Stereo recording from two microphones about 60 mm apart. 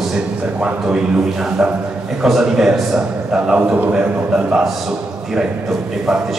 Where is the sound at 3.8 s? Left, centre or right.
Right.